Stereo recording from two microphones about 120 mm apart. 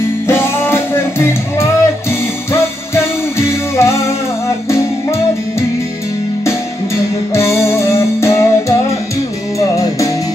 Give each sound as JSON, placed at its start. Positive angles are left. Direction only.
{"t": 0.3, "sound": "music", "side_deg": 20}
{"t": 7.3, "sound": "music", "side_deg": 20}